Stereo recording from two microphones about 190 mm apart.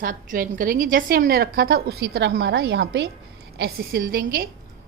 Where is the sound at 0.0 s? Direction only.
45° right (ahead or behind).